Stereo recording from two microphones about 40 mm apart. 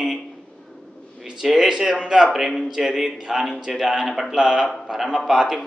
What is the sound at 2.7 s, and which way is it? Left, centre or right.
A man's voice, centre.